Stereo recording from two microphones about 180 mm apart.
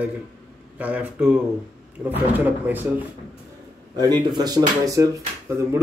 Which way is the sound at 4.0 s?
25° right (ahead or behind).